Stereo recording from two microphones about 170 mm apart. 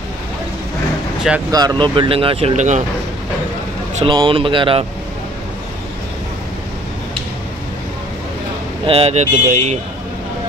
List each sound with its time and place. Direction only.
1.5 s speech: 20° right (ahead or behind); by 2.8 s 45° right (ahead or behind)
3.9 s speech: 30° right (ahead or behind)
8.8 s speech: 35° right (ahead or behind)